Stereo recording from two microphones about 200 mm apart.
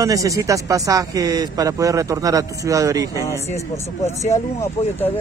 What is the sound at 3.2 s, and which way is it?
Speech, 15° left (ahead or behind).